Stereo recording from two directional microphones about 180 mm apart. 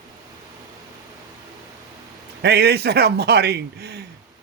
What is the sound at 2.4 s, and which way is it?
Speech, 65° right (ahead or behind).